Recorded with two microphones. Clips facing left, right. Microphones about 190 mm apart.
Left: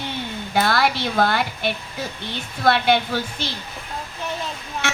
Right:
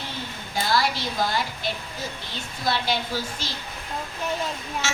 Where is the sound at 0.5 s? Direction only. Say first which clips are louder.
Left 4 dB; 60° left (ahead or behind).